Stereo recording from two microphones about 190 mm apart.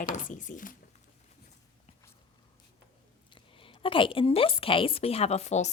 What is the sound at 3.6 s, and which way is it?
A woman's voice, 25° left (ahead or behind).